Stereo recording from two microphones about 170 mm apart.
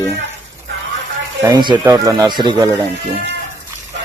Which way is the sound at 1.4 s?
25° right (ahead or behind).